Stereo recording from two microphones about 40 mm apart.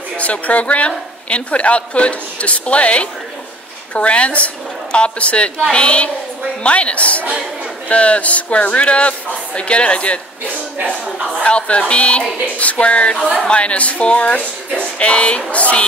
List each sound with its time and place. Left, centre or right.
0.2 s a woman's voice: left
11.4 s a woman's voice: left